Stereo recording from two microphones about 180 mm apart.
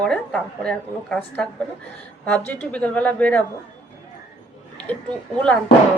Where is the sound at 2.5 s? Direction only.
10° left (ahead or behind).